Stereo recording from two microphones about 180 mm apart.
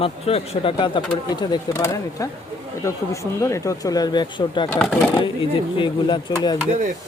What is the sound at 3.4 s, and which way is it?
Speech, 15° left (ahead or behind).